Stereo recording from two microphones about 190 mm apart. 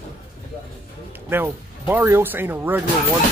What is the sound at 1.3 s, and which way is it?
Music, 10° right (ahead or behind).